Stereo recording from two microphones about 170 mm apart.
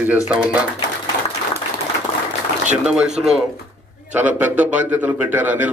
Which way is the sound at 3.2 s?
Centre (ahead or behind).